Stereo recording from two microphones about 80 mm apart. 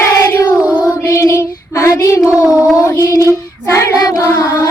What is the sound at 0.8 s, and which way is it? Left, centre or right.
Child singing, left.